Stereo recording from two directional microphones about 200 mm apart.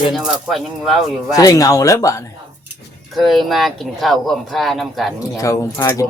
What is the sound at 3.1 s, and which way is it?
Speech, centre (ahead or behind).